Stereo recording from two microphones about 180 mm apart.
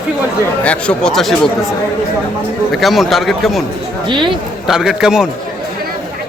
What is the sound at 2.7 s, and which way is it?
Speech, centre (ahead or behind).